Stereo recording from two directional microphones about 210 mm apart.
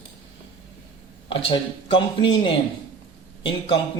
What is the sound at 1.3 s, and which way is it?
Speech, 25° left (ahead or behind).